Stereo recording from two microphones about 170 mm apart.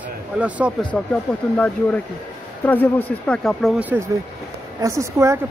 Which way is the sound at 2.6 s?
10° left (ahead or behind).